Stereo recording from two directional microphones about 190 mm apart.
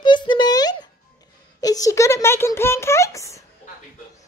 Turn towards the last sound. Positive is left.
turn(degrees=15)  # may be behind; listen again after turning